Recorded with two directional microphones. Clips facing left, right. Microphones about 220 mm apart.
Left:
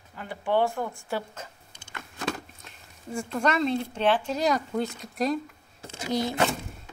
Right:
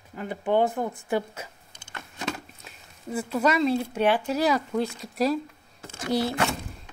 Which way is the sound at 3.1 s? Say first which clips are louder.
Right 2 dB; 5° right (ahead or behind).